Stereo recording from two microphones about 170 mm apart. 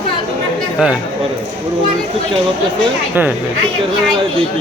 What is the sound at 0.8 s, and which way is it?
Speech, 5° right (ahead or behind).